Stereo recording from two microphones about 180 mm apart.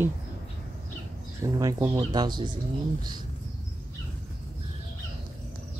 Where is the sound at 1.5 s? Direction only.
20° right (ahead or behind).